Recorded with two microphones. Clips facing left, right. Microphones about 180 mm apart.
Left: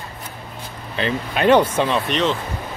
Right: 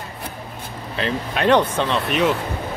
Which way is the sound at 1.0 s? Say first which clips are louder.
Left 1 dB; centre (ahead or behind).